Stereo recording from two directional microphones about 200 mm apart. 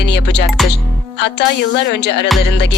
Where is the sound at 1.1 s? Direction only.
60° left (ahead or behind).